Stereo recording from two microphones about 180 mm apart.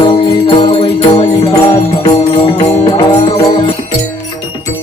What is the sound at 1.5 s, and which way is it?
Music, 20° left (ahead or behind).